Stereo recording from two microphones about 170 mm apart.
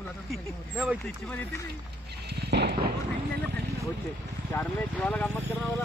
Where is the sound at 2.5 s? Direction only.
75° right (ahead or behind).